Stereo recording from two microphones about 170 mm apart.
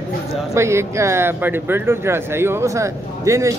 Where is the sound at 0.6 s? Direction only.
15° right (ahead or behind).